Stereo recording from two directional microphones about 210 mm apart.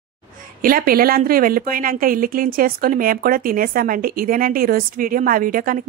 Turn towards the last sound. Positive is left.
turn(degrees=-40)  # may be behind; listen again after turning